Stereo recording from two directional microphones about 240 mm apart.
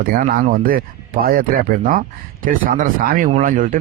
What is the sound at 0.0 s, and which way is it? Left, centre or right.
Speech, right.